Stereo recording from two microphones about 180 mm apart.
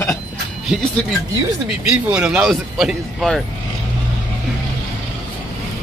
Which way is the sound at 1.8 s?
5° right (ahead or behind).